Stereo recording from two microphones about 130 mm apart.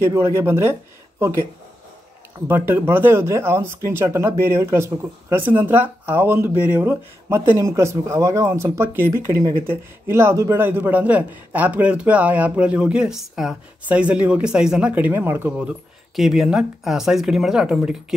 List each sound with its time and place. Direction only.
0.0 s speech: 20° right (ahead or behind)
2.4 s speech: 15° right (ahead or behind)
16.2 s speech: 5° right (ahead or behind)